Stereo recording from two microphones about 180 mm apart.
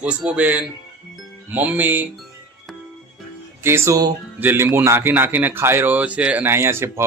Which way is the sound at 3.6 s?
15° right (ahead or behind).